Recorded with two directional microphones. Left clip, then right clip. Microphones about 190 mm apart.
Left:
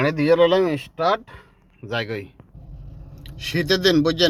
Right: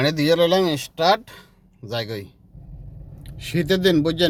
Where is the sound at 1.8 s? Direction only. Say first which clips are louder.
Left 2 dB; 20° right (ahead or behind).